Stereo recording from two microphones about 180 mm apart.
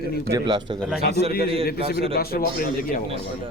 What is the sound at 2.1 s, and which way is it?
Speech, 55° left (ahead or behind).